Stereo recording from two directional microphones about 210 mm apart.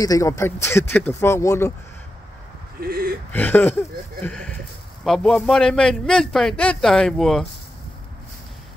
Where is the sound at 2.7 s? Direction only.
45° right (ahead or behind).